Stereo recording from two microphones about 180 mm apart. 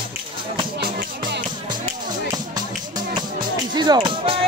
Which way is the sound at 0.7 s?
65° right (ahead or behind).